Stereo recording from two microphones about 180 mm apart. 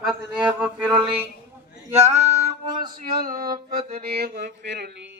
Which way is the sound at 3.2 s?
50° right (ahead or behind).